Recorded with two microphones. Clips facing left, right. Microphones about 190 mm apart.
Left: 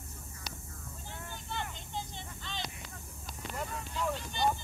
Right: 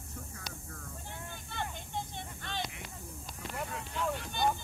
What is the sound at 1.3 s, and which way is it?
Vehicle, 55° right (ahead or behind).